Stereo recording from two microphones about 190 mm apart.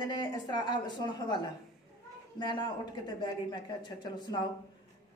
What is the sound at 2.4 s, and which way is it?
Speech, 25° left (ahead or behind).